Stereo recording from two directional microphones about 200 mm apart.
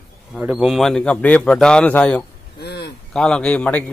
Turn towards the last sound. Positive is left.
turn(degrees=5)  # may be behind; listen again after turning